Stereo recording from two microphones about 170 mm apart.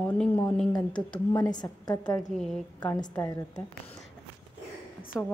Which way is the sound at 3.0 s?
25° left (ahead or behind).